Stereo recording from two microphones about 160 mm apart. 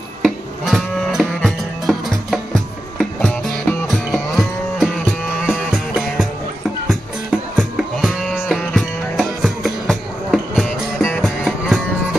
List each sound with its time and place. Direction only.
0.2 s music: centre (ahead or behind)
7.5 s music: centre (ahead or behind)